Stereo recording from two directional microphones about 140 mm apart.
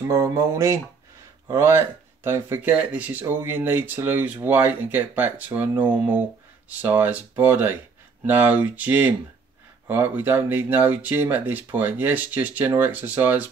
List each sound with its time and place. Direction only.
0.1 s speech: 20° right (ahead or behind)